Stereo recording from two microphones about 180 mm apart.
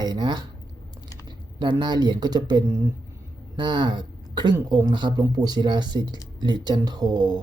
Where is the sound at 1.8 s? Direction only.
25° right (ahead or behind).